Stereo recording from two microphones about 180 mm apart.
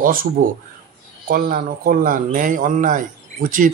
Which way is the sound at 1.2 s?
55° right (ahead or behind).